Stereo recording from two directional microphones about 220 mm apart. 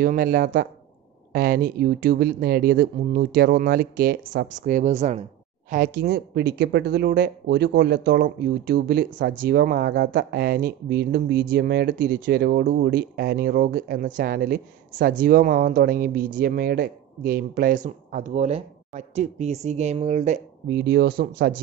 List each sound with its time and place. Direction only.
0.0 s speech: 40° right (ahead or behind)
5.7 s speech: 40° right (ahead or behind)
20.8 s speech: 45° right (ahead or behind)